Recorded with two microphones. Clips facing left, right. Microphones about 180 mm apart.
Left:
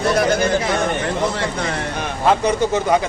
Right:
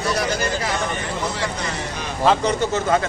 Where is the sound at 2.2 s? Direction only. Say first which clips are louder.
Left 2 dB; 10° left (ahead or behind).